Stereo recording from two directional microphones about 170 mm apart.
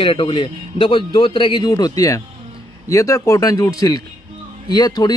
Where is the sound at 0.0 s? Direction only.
30° left (ahead or behind).